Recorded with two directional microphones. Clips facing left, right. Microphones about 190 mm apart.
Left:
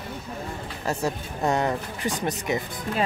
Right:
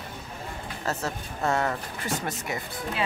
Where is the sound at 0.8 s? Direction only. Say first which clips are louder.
Left 4 dB; 15° left (ahead or behind).